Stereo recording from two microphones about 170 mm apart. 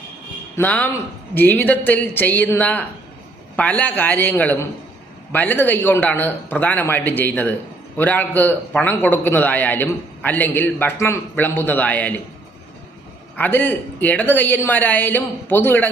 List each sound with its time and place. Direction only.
0.5 s a man's voice: 10° left (ahead or behind)
13.3 s a man's voice: 10° left (ahead or behind)